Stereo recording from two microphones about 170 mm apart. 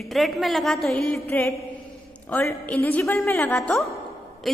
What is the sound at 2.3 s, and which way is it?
A woman's voice, 10° left (ahead or behind).